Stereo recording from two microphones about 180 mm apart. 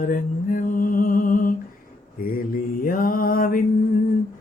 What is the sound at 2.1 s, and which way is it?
Mantra, 50° left (ahead or behind).